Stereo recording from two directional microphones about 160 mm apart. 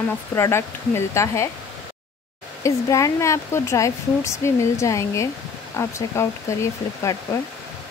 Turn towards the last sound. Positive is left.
turn(degrees=20)  # may be behind; listen again after turning